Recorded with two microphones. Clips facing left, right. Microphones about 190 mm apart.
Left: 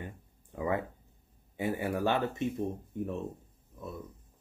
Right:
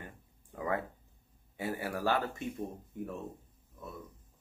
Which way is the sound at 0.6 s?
20° left (ahead or behind).